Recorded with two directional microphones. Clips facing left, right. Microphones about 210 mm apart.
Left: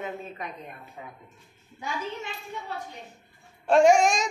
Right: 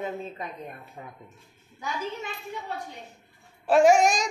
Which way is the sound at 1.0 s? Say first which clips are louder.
Left 1 dB; 45° right (ahead or behind).